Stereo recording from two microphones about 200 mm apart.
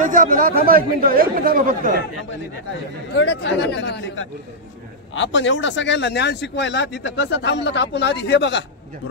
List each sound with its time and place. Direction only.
0.0 s speech: 40° right (ahead or behind)
3.2 s speech: 60° left (ahead or behind)